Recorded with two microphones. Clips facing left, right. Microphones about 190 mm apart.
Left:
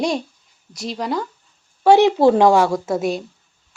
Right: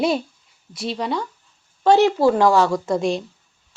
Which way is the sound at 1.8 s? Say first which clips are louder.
Left 2 dB; 15° left (ahead or behind).